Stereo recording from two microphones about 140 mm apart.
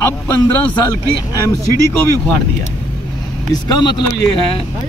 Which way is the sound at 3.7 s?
30° left (ahead or behind).